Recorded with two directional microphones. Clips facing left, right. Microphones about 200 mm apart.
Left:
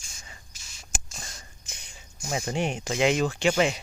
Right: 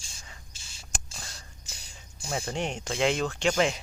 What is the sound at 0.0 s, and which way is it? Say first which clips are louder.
Whispering: even; 30° right (ahead or behind).